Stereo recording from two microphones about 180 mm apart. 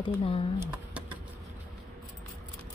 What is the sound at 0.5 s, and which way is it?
Speech, 15° right (ahead or behind).